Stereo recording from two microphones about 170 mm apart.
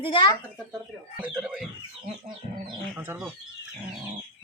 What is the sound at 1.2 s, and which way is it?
Speech, 5° right (ahead or behind).